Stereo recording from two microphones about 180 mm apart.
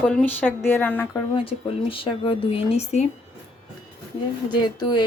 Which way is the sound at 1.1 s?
30° left (ahead or behind).